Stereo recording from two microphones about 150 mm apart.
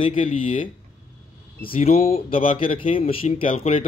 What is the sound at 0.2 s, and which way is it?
Speech, 60° left (ahead or behind).